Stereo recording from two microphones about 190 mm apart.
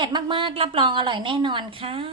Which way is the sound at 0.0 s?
25° right (ahead or behind).